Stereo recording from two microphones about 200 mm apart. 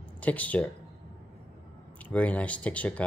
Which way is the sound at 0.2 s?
5° left (ahead or behind).